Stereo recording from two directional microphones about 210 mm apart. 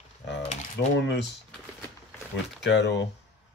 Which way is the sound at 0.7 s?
55° left (ahead or behind).